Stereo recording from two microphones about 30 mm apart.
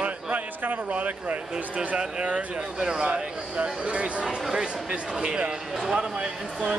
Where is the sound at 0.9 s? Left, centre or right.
Right.